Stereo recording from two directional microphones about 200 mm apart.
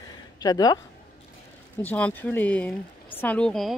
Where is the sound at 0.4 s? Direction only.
20° left (ahead or behind).